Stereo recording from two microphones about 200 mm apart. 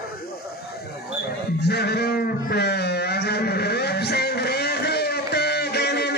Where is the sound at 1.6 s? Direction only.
55° left (ahead or behind).